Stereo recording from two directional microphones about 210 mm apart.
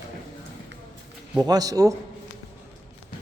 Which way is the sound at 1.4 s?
20° right (ahead or behind).